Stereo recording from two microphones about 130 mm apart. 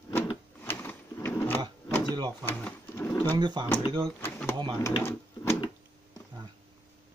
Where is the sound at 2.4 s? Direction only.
15° left (ahead or behind).